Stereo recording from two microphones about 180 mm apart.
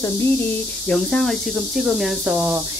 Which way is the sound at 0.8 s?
Centre (ahead or behind).